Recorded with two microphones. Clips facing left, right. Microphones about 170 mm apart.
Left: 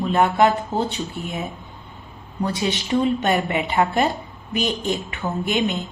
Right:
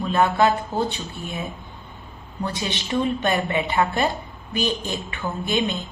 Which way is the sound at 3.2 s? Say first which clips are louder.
Left 1 dB; 15° left (ahead or behind).